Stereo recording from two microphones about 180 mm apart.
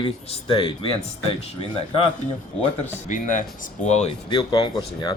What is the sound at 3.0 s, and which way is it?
Speech, 45° left (ahead or behind).